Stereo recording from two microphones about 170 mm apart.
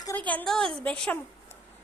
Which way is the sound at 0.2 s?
10° left (ahead or behind).